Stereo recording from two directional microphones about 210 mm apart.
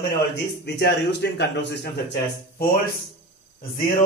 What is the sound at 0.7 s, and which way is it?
A man's voice, 50° left (ahead or behind).